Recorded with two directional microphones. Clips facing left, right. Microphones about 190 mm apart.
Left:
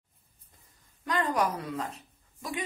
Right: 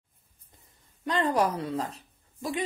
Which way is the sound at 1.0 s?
30° right (ahead or behind).